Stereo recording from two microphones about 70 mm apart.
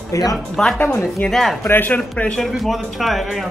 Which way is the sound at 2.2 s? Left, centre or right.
Centre.